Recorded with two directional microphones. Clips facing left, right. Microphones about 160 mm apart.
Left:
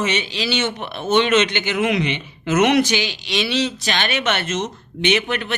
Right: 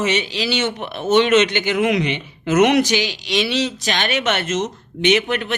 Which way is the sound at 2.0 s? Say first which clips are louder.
Right 1 dB; 40° right (ahead or behind).